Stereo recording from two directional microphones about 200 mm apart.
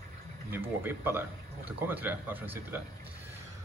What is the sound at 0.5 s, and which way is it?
Speech, 10° right (ahead or behind).